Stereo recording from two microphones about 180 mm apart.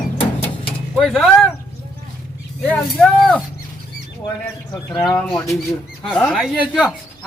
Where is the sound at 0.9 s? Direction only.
Centre (ahead or behind).